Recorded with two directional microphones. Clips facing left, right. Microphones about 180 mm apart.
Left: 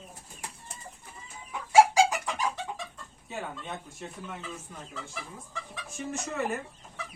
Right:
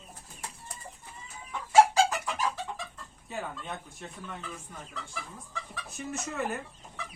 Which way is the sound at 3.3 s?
Centre (ahead or behind).